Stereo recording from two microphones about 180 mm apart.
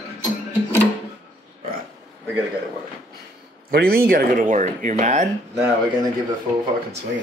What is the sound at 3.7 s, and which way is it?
Speech, 55° right (ahead or behind).